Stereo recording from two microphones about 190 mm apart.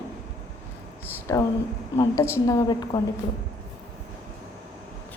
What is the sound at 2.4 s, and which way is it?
Speech, 20° left (ahead or behind).